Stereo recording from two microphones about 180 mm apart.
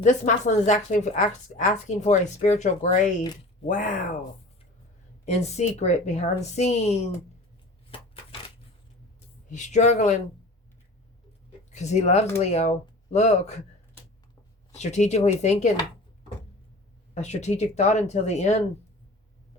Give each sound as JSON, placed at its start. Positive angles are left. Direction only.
{"t": 0.0, "sound": "a woman's voice", "side_deg": 45}
{"t": 5.2, "sound": "a woman's voice", "side_deg": 40}
{"t": 7.9, "sound": "crushing", "side_deg": 30}
{"t": 9.5, "sound": "speech", "side_deg": 40}
{"t": 11.7, "sound": "a woman's voice", "side_deg": 40}
{"t": 14.8, "sound": "a woman's voice", "side_deg": 40}
{"t": 17.2, "sound": "a woman's voice", "side_deg": 40}